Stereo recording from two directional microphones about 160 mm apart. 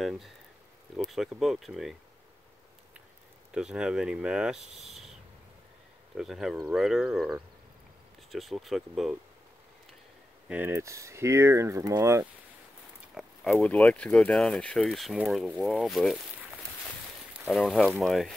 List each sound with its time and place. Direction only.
0.0 s a sound: centre (ahead or behind)
0.9 s speech: centre (ahead or behind)
3.5 s speech: 5° right (ahead or behind)
6.1 s speech: centre (ahead or behind)
10.5 s speech: 15° right (ahead or behind)
13.1 s speech: centre (ahead or behind)
17.5 s speech: centre (ahead or behind)